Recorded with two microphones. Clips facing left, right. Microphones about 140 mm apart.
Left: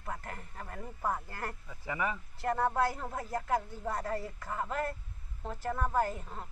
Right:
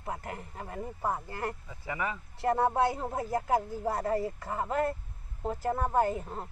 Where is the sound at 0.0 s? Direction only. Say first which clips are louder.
Right 4 dB; 20° right (ahead or behind).